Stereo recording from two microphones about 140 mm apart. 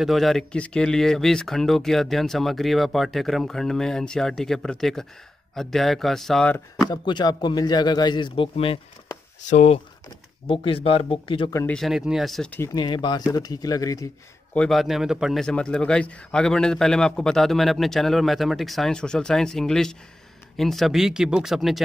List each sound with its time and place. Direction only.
0.0 s speech: centre (ahead or behind)
6.8 s a man's voice: 30° left (ahead or behind)
9.4 s speech: 55° left (ahead or behind)
10.4 s a man's voice: 40° left (ahead or behind)
11.6 s speech: 5° left (ahead or behind)
12.4 s speech: 15° left (ahead or behind)
12.7 s a man's voice: 35° left (ahead or behind)
14.5 s speech: 5° left (ahead or behind)